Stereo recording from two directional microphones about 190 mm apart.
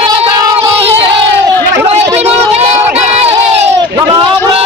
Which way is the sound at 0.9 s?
25° right (ahead or behind).